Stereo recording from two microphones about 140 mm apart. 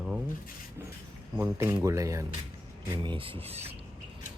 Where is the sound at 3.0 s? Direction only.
40° right (ahead or behind).